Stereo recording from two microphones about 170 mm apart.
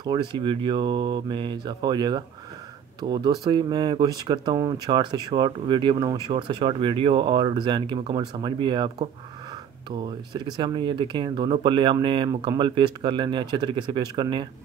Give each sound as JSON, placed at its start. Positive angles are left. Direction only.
{"t": 0.0, "sound": "speech", "side_deg": -25}